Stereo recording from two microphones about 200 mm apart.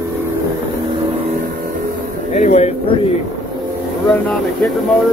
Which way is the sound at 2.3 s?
35° left (ahead or behind).